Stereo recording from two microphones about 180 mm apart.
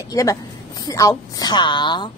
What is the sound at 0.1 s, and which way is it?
A woman's voice, 20° left (ahead or behind).